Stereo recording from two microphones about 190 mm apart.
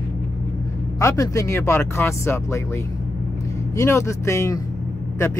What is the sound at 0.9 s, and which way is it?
Speech, 15° left (ahead or behind).